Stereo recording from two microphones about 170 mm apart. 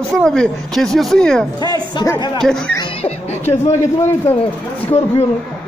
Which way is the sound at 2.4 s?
5° left (ahead or behind).